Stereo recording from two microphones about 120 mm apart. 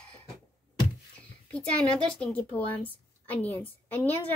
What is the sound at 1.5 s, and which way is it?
A woman's voice, 10° left (ahead or behind).